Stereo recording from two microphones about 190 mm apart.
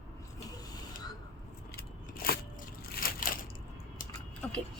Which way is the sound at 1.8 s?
55° left (ahead or behind).